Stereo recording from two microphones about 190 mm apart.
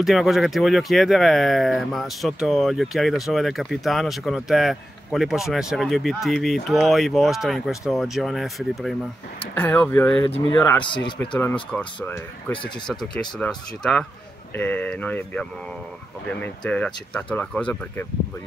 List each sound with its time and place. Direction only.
0.0 s speech: centre (ahead or behind)
10.8 s speech: 25° left (ahead or behind)
11.1 s speech: 10° left (ahead or behind)